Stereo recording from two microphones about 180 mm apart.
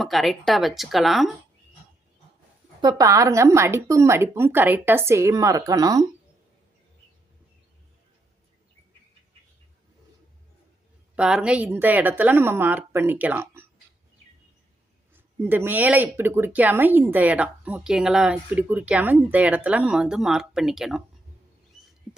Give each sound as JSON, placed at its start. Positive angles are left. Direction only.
{"t": 0.0, "sound": "speech", "side_deg": 0}
{"t": 2.8, "sound": "speech", "side_deg": -20}
{"t": 11.1, "sound": "speech", "side_deg": -5}
{"t": 15.1, "sound": "speech", "side_deg": -10}